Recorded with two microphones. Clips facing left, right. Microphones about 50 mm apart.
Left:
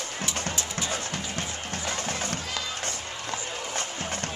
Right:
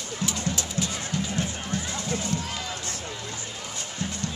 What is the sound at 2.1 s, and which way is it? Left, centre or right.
Run, left.